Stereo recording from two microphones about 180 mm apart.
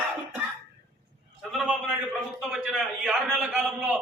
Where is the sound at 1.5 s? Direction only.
Centre (ahead or behind).